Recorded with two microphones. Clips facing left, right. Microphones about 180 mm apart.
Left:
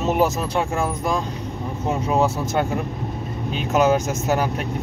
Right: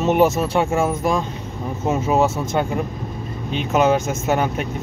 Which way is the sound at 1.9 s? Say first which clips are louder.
Right 2 dB; 5° right (ahead or behind).